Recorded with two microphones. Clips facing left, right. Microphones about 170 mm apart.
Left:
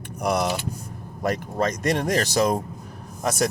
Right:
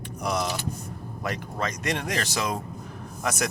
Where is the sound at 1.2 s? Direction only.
40° left (ahead or behind).